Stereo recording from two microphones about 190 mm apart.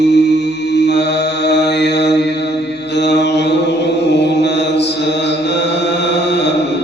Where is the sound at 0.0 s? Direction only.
65° left (ahead or behind).